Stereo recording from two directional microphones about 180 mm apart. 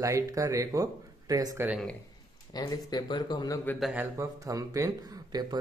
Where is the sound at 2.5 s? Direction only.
20° left (ahead or behind).